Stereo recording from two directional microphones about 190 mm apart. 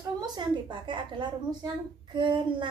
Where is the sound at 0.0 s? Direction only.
25° right (ahead or behind).